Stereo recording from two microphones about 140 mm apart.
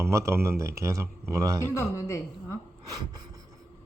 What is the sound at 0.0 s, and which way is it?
A man's voice, 20° right (ahead or behind).